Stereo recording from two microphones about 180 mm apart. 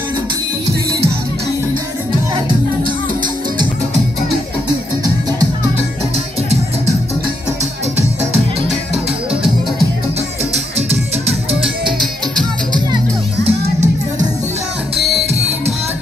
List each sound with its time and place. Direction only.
8.6 s music: centre (ahead or behind)
11.6 s music: centre (ahead or behind)
12.7 s music: 25° right (ahead or behind)
15.0 s music: centre (ahead or behind)